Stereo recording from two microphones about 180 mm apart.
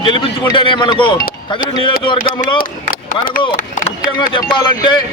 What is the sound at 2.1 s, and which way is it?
Speech, 45° left (ahead or behind).